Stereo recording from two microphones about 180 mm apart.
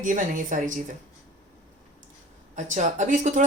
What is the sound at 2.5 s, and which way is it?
Speech, 40° right (ahead or behind).